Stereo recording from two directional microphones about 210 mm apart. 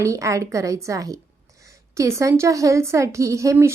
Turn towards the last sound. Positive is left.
turn(degrees=-15)  # may be behind; listen again after turning